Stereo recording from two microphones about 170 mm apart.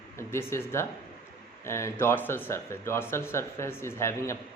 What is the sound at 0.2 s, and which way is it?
Speech, 15° left (ahead or behind).